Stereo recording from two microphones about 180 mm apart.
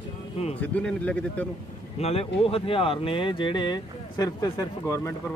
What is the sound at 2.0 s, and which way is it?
Speech, 35° left (ahead or behind).